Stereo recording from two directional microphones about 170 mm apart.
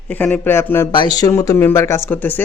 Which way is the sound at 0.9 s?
25° left (ahead or behind).